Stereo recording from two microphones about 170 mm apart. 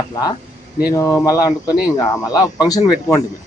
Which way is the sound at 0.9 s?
20° left (ahead or behind).